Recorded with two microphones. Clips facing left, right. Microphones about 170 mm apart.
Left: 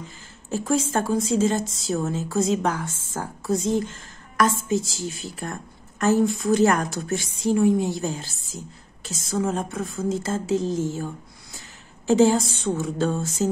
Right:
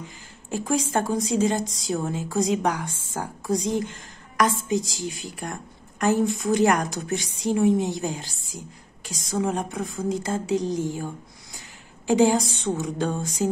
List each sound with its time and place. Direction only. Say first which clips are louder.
0.5 s a woman's voice: left 2 dB; 15° right (ahead or behind)
9.3 s a woman's voice: left 1 dB; 15° right (ahead or behind)
12.1 s a woman's voice: left 1 dB; 15° right (ahead or behind)